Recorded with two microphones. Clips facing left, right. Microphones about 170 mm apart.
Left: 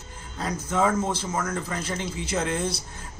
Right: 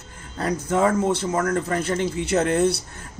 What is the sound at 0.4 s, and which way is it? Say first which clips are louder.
Speech: right 4 dB; 60° right (ahead or behind).